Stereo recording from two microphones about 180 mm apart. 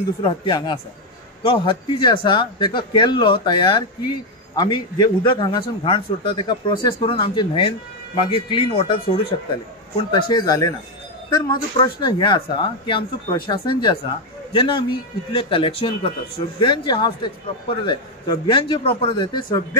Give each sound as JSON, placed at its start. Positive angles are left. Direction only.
{"t": 0.2, "sound": "speech", "side_deg": 25}